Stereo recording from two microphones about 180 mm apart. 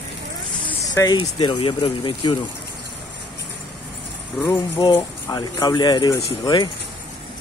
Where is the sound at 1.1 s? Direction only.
25° left (ahead or behind).